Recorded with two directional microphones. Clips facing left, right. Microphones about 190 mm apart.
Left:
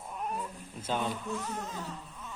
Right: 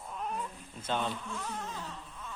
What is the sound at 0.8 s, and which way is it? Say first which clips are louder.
Speech: left 1 dB; 10° left (ahead or behind).